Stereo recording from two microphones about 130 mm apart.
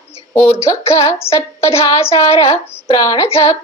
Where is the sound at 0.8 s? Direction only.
50° left (ahead or behind).